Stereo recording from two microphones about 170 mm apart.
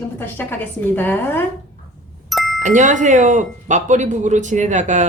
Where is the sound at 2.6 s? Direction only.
45° right (ahead or behind).